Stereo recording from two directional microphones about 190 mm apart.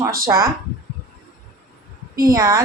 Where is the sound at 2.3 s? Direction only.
20° right (ahead or behind).